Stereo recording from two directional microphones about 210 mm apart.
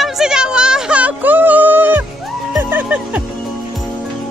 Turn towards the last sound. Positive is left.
turn(degrees=-5)  # may be behind; listen again after turning